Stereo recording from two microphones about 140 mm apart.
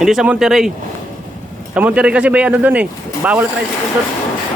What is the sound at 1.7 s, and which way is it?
Speech, 10° right (ahead or behind).